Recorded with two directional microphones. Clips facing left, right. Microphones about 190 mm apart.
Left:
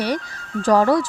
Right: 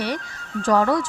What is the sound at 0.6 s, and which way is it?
Speech, 35° left (ahead or behind).